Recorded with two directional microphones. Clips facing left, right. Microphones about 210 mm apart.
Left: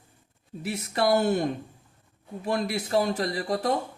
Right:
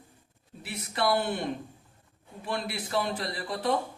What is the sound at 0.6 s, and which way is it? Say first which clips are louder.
A man's voice: left 4 dB; 45° left (ahead or behind).